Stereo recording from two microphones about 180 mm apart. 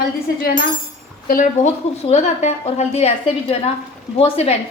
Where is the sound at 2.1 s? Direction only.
40° left (ahead or behind).